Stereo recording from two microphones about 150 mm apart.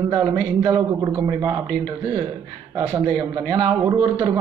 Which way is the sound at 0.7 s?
25° right (ahead or behind).